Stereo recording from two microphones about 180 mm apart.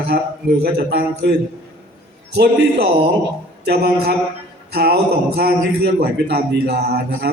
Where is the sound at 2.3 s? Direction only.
65° right (ahead or behind).